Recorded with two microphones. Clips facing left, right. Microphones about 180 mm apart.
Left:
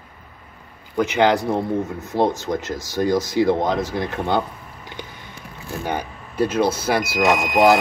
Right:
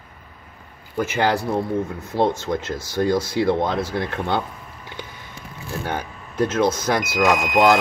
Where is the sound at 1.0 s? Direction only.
20° left (ahead or behind).